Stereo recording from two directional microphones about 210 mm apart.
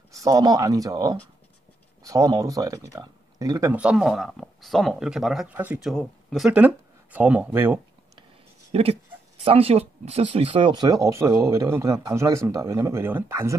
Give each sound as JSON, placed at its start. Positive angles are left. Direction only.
{"t": 0.1, "sound": "speech", "side_deg": -15}
{"t": 8.7, "sound": "speech", "side_deg": -30}